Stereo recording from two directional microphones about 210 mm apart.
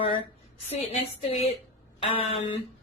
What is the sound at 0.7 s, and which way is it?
A woman's voice, 30° left (ahead or behind).